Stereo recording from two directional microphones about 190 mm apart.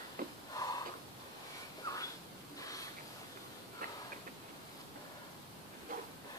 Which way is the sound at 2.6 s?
20° left (ahead or behind).